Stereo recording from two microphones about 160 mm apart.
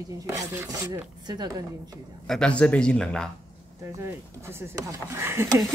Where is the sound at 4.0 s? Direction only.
15° right (ahead or behind).